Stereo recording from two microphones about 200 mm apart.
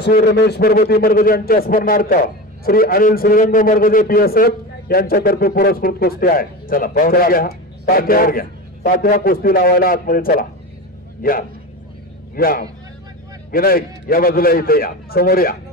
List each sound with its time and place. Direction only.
0.0 s a man's voice: 55° left (ahead or behind)